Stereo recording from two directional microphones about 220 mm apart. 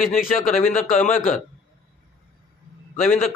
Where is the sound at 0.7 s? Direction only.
35° left (ahead or behind).